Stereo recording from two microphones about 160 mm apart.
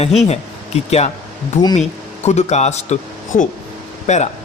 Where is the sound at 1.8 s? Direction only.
45° left (ahead or behind).